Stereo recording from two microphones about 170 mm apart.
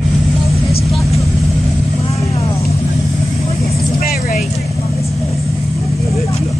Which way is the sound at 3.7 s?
65° left (ahead or behind).